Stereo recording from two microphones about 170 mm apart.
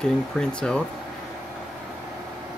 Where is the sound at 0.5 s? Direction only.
5° left (ahead or behind).